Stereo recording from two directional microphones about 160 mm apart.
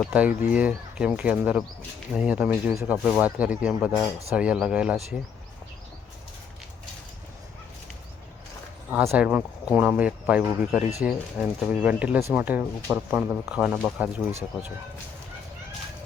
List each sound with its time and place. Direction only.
0.0 s speech: 10° right (ahead or behind)
8.9 s speech: 10° right (ahead or behind)